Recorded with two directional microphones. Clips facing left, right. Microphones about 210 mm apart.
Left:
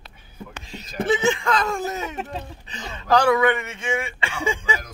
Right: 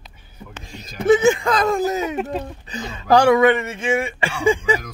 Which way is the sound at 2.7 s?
35° right (ahead or behind).